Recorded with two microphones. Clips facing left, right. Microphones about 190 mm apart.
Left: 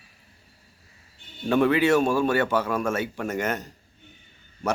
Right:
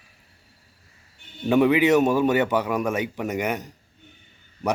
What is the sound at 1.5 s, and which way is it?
A man's voice, 15° right (ahead or behind).